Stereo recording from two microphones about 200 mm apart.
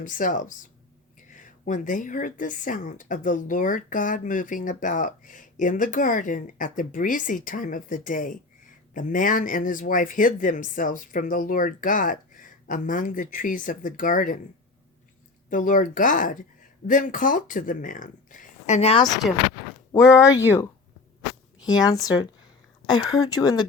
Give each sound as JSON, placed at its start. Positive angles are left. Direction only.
{"t": 0.0, "sound": "speech", "side_deg": 40}
{"t": 15.4, "sound": "speech", "side_deg": 40}
{"t": 19.9, "sound": "speech", "side_deg": 15}
{"t": 21.8, "sound": "speech", "side_deg": 20}